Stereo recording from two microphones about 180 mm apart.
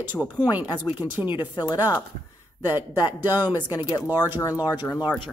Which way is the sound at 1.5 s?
20° left (ahead or behind).